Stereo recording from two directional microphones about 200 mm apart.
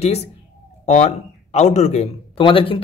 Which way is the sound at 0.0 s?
30° left (ahead or behind).